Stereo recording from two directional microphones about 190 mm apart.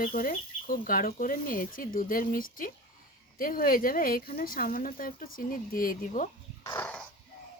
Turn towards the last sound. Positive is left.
turn(degrees=10)  # may be behind; listen again after turning